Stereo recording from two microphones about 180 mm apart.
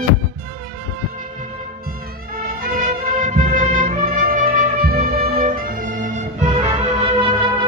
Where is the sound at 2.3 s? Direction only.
55° right (ahead or behind).